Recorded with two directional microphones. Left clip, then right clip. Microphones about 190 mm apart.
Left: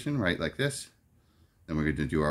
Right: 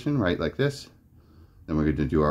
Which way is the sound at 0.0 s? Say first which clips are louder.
Right 4 dB; 15° left (ahead or behind).